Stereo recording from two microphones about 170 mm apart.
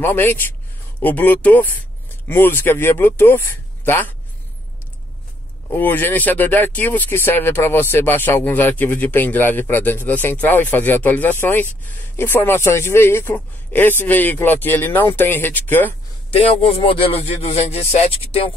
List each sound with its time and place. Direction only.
0.0 s speech: 10° left (ahead or behind)
5.7 s speech: 10° left (ahead or behind)
16.7 s speech: 30° left (ahead or behind)